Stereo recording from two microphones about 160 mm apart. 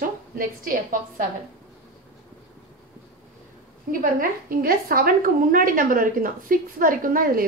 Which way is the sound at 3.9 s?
60° right (ahead or behind).